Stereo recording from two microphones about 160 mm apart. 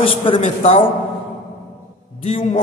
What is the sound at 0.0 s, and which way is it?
Speech, 35° left (ahead or behind).